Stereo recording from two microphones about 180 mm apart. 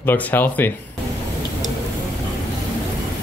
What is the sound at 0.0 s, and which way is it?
Speech, 10° left (ahead or behind).